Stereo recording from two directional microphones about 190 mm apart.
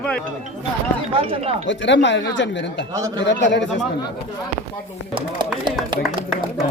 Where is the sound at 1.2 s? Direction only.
30° right (ahead or behind).